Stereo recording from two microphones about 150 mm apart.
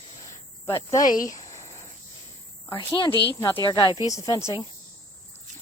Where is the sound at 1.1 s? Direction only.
25° left (ahead or behind).